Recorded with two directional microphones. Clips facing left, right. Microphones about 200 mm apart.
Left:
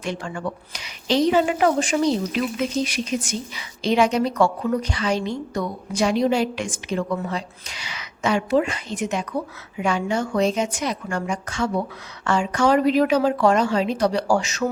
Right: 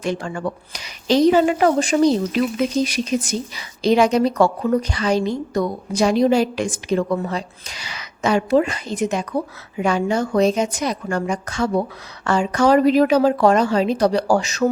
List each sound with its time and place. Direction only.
0.0 s a woman's voice: 40° right (ahead or behind)